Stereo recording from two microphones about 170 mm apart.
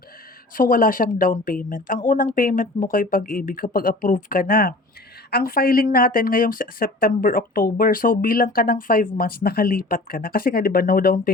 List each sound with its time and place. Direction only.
0.5 s speech: 55° left (ahead or behind)